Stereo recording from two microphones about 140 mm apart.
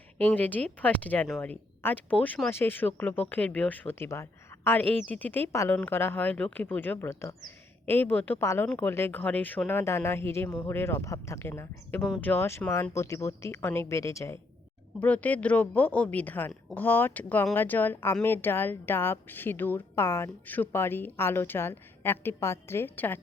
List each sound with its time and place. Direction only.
0.2 s speech: 10° left (ahead or behind)
14.9 s speech: 10° left (ahead or behind)